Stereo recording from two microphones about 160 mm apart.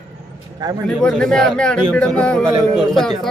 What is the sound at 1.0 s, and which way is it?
Speech, 5° left (ahead or behind).